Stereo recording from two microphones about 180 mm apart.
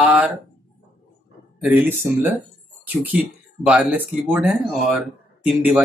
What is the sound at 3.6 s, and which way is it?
Speech, 5° right (ahead or behind).